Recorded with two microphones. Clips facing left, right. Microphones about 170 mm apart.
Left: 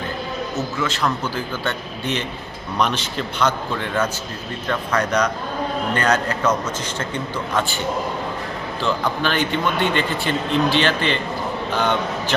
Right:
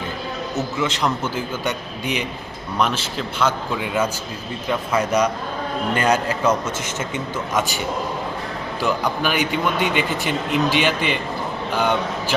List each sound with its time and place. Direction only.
0.8 s a man's voice: 20° right (ahead or behind)
8.8 s a man's voice: 10° right (ahead or behind)